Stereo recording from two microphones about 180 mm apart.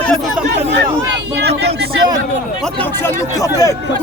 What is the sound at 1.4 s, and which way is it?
Speech, 65° right (ahead or behind).